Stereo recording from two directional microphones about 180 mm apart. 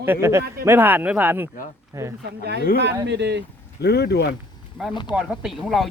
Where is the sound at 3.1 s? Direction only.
75° right (ahead or behind).